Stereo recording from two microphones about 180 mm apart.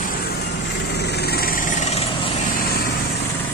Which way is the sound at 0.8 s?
65° left (ahead or behind).